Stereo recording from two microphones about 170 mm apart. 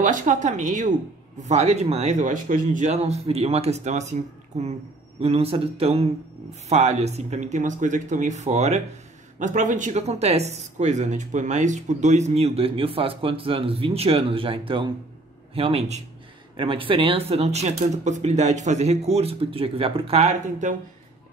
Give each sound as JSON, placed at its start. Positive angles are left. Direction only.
{"t": 0.0, "sound": "speech", "side_deg": -45}